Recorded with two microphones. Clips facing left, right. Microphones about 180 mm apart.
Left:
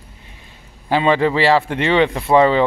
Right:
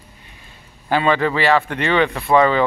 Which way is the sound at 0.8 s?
25° left (ahead or behind).